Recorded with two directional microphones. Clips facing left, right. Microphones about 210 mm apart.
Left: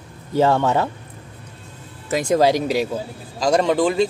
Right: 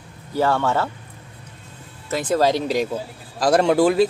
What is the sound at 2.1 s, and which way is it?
Speech, 15° left (ahead or behind).